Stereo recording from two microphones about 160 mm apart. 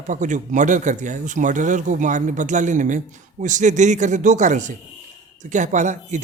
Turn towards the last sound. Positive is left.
turn(degrees=-50)  # may be behind; listen again after turning